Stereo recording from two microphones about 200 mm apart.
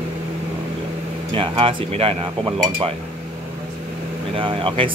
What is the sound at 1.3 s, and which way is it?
Speech, 25° right (ahead or behind).